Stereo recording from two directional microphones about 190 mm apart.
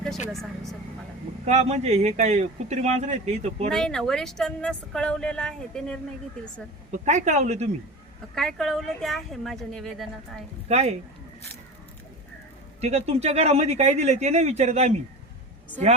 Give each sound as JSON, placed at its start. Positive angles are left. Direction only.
{"t": 0.3, "sound": "speech", "side_deg": 0}
{"t": 1.5, "sound": "speech", "side_deg": -35}
{"t": 3.7, "sound": "speech", "side_deg": 5}
{"t": 7.0, "sound": "speech", "side_deg": -40}
{"t": 8.4, "sound": "speech", "side_deg": 0}
{"t": 10.7, "sound": "speech", "side_deg": -35}
{"t": 12.8, "sound": "speech", "side_deg": -35}